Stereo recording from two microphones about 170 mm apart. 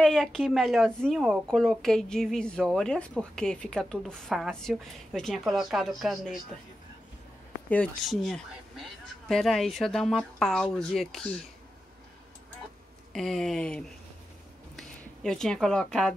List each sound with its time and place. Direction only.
0.0 s a woman's voice: 5° left (ahead or behind)
7.7 s a woman's voice: 5° left (ahead or behind)
13.1 s a woman's voice: centre (ahead or behind)